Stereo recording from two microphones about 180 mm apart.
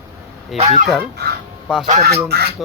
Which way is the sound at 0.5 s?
40° right (ahead or behind).